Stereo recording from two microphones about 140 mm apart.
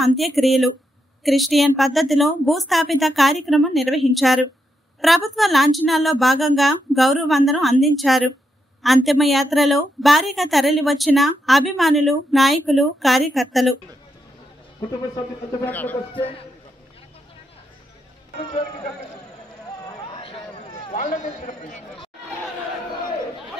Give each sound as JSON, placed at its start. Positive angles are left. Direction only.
{"t": 0.0, "sound": "a woman's voice", "side_deg": 0}
{"t": 15.6, "sound": "speech", "side_deg": 10}
{"t": 19.9, "sound": "a sound", "side_deg": 35}
{"t": 20.9, "sound": "speech", "side_deg": 65}